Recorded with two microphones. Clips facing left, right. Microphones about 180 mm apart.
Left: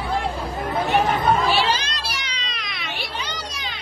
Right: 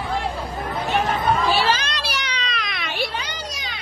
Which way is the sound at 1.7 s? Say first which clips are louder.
Right 2 dB; 65° right (ahead or behind).